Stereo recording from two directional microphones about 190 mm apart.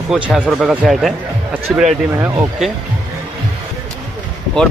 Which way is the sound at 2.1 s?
15° right (ahead or behind).